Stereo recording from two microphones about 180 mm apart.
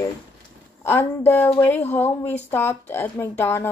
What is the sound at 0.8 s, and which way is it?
A woman's voice, 10° left (ahead or behind).